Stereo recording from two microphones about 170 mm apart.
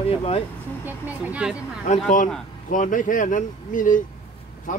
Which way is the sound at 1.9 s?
45° left (ahead or behind).